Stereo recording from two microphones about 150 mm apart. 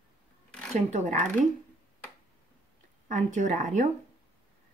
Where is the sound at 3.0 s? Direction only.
55° right (ahead or behind).